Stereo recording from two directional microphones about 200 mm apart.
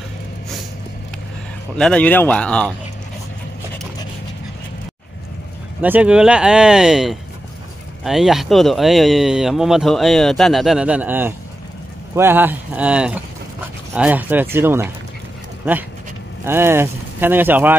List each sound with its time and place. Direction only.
1.8 s speech: 5° left (ahead or behind)
5.8 s speech: 5° right (ahead or behind)
16.4 s speech: 10° right (ahead or behind)